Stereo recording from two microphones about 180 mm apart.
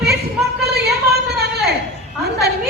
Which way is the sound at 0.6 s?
65° right (ahead or behind).